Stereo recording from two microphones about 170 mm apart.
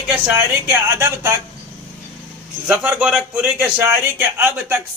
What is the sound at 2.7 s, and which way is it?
A man's voice, 5° right (ahead or behind).